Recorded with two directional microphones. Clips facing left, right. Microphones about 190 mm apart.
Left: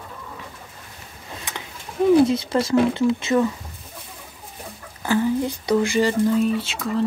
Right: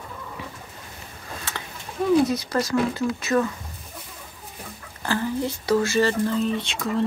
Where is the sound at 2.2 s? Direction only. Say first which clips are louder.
Left 3 dB; 25° left (ahead or behind).